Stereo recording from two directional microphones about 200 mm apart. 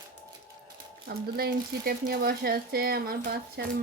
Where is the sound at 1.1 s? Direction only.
50° right (ahead or behind).